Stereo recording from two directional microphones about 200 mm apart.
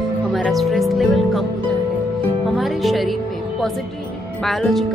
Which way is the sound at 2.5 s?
Centre (ahead or behind).